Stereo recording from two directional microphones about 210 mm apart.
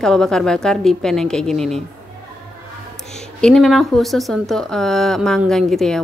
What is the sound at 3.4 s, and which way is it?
A woman's voice, 5° left (ahead or behind).